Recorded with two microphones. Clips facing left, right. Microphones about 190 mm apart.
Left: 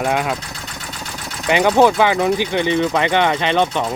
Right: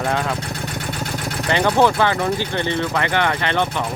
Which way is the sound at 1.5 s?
15° left (ahead or behind).